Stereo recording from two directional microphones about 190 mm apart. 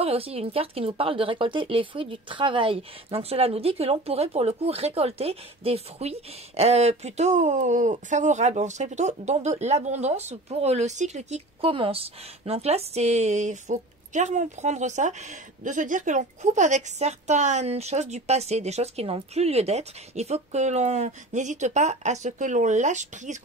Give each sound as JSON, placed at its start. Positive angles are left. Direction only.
{"t": 0.0, "sound": "speech", "side_deg": -30}